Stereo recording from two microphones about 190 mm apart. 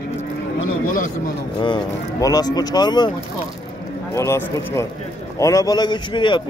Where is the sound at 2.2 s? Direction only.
20° left (ahead or behind).